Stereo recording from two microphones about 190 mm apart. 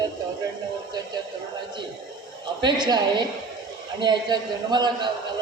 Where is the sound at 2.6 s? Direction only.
25° right (ahead or behind).